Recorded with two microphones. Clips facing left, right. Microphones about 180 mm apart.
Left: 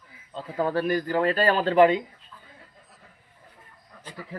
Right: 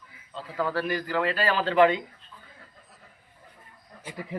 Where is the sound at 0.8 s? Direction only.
45° left (ahead or behind).